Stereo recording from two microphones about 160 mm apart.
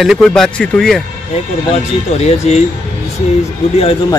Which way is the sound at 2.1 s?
40° left (ahead or behind).